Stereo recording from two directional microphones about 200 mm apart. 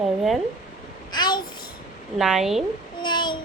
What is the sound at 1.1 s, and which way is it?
Speech, 20° left (ahead or behind).